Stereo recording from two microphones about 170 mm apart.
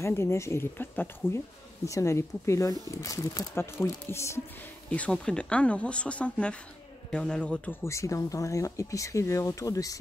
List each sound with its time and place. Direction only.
0.0 s speech: 15° left (ahead or behind)